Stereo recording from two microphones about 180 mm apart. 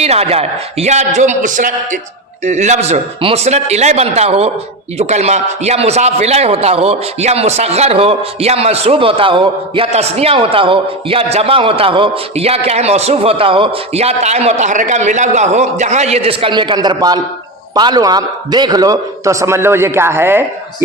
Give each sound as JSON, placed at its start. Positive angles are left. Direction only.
{"t": 0.0, "sound": "a man's voice", "side_deg": -35}